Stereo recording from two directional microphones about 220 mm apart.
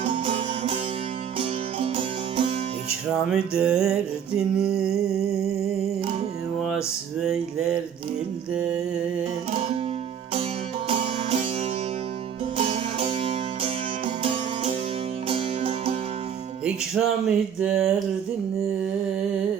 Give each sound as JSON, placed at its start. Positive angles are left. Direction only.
{"t": 0.0, "sound": "music", "side_deg": -30}
{"t": 3.2, "sound": "music", "side_deg": -5}
{"t": 7.2, "sound": "music", "side_deg": -5}
{"t": 9.5, "sound": "music", "side_deg": -30}
{"t": 10.8, "sound": "music", "side_deg": -25}
{"t": 12.5, "sound": "music", "side_deg": -30}
{"t": 16.6, "sound": "music", "side_deg": -5}